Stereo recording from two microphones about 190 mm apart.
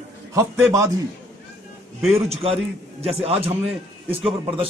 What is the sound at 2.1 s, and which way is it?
Speech, 30° right (ahead or behind).